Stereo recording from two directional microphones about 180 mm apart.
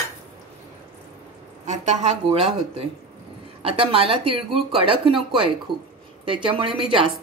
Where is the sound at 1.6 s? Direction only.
40° right (ahead or behind).